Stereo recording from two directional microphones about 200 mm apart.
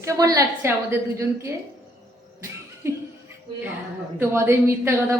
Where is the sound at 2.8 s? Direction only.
15° right (ahead or behind).